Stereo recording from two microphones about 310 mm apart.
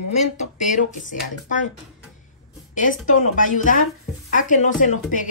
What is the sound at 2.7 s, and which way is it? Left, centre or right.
Speech, left.